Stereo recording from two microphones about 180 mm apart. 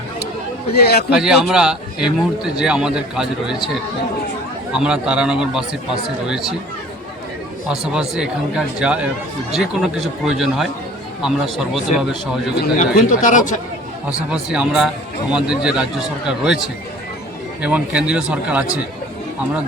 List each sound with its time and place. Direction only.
0.7 s a man's voice: 60° left (ahead or behind)
1.1 s a man's voice: 5° right (ahead or behind)
4.7 s a man's voice: 5° right (ahead or behind)
7.7 s a man's voice: 5° right (ahead or behind)
12.9 s speech: 45° left (ahead or behind)
14.3 s a man's voice: 5° right (ahead or behind)
17.6 s speech: 5° right (ahead or behind)